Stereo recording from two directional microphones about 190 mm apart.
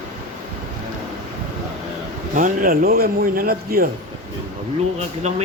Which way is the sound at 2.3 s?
45° right (ahead or behind).